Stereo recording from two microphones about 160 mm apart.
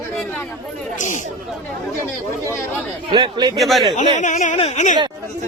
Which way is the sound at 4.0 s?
50° left (ahead or behind).